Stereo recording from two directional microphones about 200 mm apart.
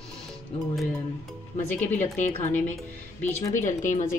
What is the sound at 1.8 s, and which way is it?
Speech, 10° left (ahead or behind).